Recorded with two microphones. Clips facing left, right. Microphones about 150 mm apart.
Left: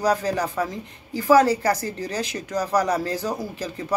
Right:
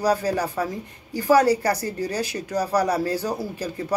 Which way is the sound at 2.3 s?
35° right (ahead or behind).